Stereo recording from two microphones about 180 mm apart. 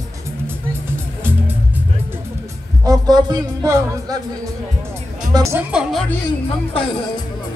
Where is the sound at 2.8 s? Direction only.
20° right (ahead or behind).